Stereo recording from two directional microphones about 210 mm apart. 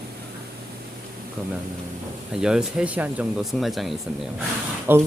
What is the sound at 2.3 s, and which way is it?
Speech, 5° right (ahead or behind).